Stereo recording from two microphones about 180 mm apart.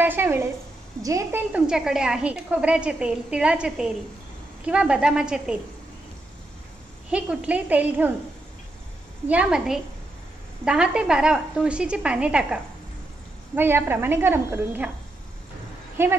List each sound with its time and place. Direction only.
0.0 s a woman's voice: 10° right (ahead or behind)
7.1 s a woman's voice: 5° right (ahead or behind)
9.3 s a woman's voice: 5° right (ahead or behind)
13.6 s a woman's voice: 10° right (ahead or behind)
16.0 s a woman's voice: 15° right (ahead or behind)